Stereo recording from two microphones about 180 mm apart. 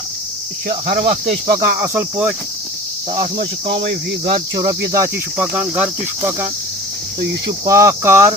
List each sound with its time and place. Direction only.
0.7 s speech: 55° right (ahead or behind)
1.8 s speech: 15° right (ahead or behind)
3.8 s cricket: 55° right (ahead or behind)
4.5 s cricket: 20° right (ahead or behind)
5.4 s speech: 5° right (ahead or behind)
7.6 s speech: 15° right (ahead or behind)